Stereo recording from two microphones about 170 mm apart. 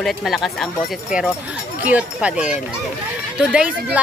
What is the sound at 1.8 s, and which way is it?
Speech, 10° right (ahead or behind).